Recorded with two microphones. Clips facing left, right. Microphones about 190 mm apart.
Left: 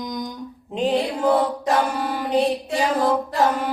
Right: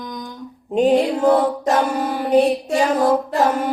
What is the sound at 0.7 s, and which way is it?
Music, 45° right (ahead or behind).